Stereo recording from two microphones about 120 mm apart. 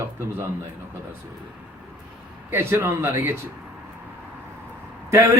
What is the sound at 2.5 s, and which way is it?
Speech, 20° right (ahead or behind).